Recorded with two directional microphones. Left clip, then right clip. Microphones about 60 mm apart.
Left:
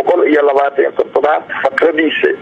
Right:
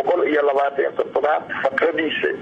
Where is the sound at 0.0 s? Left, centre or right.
Left.